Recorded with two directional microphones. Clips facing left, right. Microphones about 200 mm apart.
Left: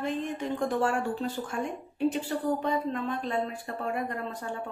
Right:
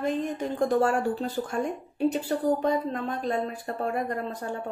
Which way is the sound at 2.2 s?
45° right (ahead or behind).